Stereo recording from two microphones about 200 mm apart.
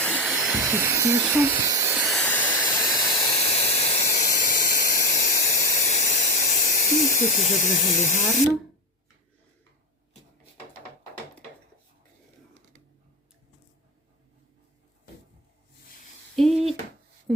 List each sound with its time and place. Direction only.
0.0 s hiss: 5° left (ahead or behind)
0.8 s speech: 15° right (ahead or behind)
2.0 s hiss: 5° left (ahead or behind)
2.6 s steam: 20° left (ahead or behind); by 8.4 s 35° left (ahead or behind)
16.3 s a sound: centre (ahead or behind)